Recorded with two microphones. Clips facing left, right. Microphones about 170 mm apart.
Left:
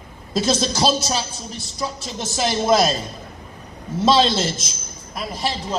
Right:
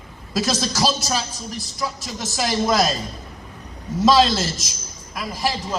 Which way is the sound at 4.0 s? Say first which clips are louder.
Right 1 dB; 25° left (ahead or behind).